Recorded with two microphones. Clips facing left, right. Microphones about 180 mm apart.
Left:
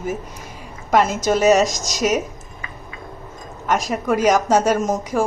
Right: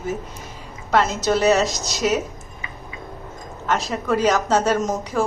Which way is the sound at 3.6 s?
15° left (ahead or behind).